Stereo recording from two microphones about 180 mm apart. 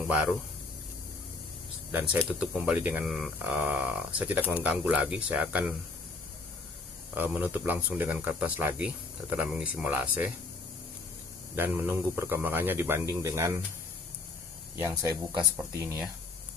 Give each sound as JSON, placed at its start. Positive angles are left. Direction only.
{"t": 2.1, "sound": "speech", "side_deg": -5}
{"t": 7.2, "sound": "speech", "side_deg": -10}
{"t": 11.5, "sound": "speech", "side_deg": -10}
{"t": 14.8, "sound": "speech", "side_deg": -15}